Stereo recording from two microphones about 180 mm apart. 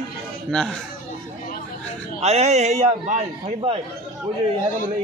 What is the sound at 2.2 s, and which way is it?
A man's voice, 35° right (ahead or behind).